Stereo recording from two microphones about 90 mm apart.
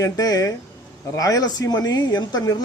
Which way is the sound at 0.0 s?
45° left (ahead or behind).